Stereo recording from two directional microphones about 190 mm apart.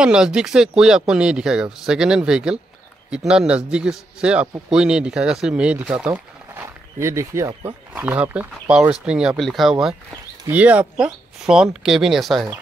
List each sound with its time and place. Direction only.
0.0 s speech: 5° right (ahead or behind)